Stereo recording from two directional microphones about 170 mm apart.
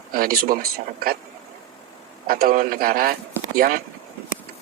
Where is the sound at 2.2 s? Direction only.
60° right (ahead or behind).